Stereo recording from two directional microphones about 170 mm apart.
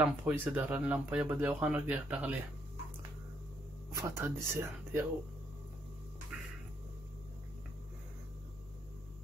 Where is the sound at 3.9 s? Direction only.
15° right (ahead or behind).